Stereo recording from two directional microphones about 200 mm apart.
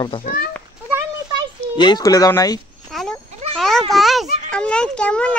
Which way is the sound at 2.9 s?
Centre (ahead or behind).